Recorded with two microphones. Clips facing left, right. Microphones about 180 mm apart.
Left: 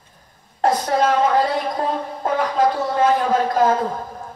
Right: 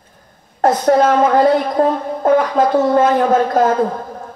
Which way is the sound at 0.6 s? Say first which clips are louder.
Right 6 dB; 45° right (ahead or behind).